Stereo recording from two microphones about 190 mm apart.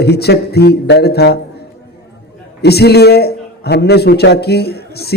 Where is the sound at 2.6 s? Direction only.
60° left (ahead or behind).